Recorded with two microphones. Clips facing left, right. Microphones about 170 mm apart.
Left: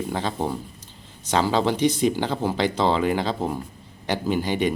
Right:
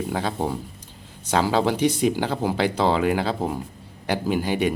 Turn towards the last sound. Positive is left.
turn(degrees=-10)  # may be behind; listen again after turning